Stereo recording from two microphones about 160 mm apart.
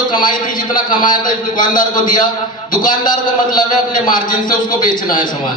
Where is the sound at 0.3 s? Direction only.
60° left (ahead or behind).